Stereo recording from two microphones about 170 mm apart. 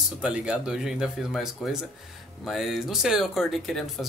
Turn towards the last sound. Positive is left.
turn(degrees=0)  # may be behind; listen again after turning